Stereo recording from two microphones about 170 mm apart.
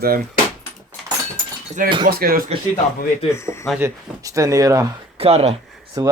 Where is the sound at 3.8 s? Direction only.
20° right (ahead or behind).